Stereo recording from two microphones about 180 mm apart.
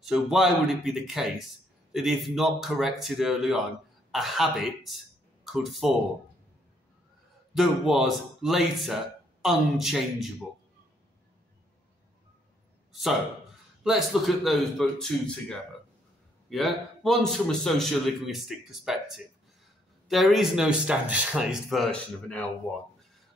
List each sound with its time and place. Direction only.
0.0 s a man's voice: centre (ahead or behind)
7.5 s a man's voice: centre (ahead or behind)
13.8 s a man's voice: centre (ahead or behind)